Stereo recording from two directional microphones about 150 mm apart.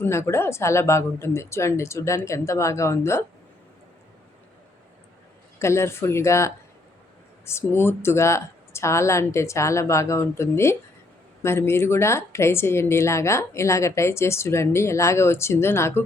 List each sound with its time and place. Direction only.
0.0 s a woman's voice: 15° left (ahead or behind)
5.5 s a woman's voice: 20° left (ahead or behind)